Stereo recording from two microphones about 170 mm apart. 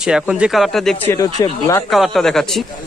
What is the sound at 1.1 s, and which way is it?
Speech, 20° left (ahead or behind).